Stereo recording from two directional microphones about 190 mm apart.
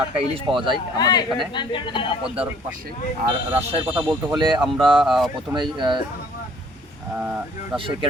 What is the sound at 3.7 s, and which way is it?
Speech, 25° right (ahead or behind).